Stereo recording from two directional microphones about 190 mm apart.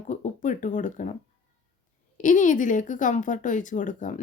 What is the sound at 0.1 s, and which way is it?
Speech, 40° left (ahead or behind).